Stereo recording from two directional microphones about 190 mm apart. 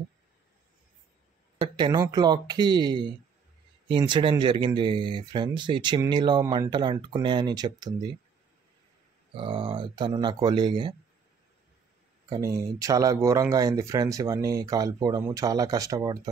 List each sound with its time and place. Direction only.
1.6 s speech: 25° right (ahead or behind)
9.3 s speech: 25° right (ahead or behind)
12.3 s speech: 20° right (ahead or behind)